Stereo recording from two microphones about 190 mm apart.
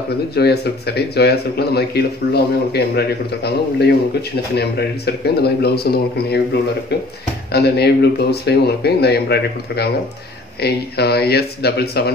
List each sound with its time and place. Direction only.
0.3 s speech: 55° left (ahead or behind)
7.5 s speech: 60° left (ahead or behind)